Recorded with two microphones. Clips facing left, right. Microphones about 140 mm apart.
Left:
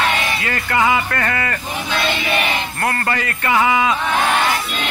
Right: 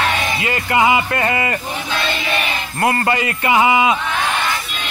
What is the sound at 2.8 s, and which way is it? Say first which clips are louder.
Speech: right 6 dB; 15° right (ahead or behind).